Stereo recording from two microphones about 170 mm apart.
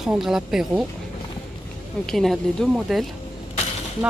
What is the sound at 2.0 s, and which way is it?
Speech, centre (ahead or behind).